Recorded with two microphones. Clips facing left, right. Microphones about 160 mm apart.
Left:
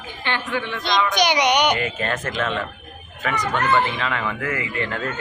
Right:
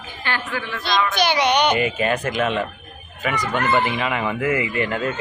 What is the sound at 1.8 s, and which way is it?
A man's voice, 15° right (ahead or behind).